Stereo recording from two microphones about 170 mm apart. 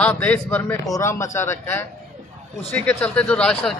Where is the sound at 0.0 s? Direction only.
10° left (ahead or behind).